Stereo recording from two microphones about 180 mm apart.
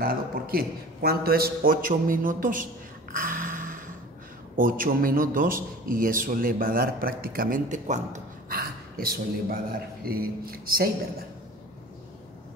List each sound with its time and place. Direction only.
0.0 s a man's voice: 55° right (ahead or behind)
3.2 s a sound: 50° right (ahead or behind)
4.6 s a man's voice: 50° right (ahead or behind)